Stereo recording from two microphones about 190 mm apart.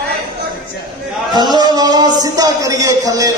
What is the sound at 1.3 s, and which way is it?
Speech, 20° right (ahead or behind).